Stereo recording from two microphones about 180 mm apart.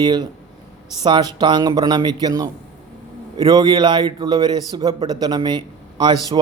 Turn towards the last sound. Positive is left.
turn(degrees=-25)  # may be behind; listen again after turning